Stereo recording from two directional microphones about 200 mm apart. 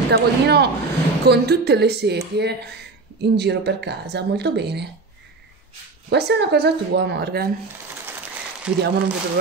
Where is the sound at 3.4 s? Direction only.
55° right (ahead or behind).